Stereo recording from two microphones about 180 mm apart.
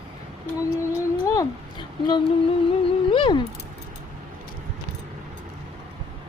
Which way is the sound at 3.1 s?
25° left (ahead or behind).